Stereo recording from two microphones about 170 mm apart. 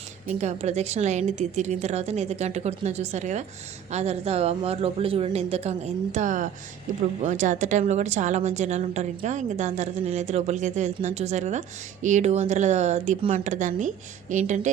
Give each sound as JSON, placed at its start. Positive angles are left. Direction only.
{"t": 0.3, "sound": "a woman's voice", "side_deg": -40}